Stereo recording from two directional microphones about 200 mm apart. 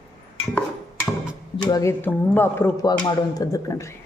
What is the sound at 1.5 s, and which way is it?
A woman's voice, 20° left (ahead or behind).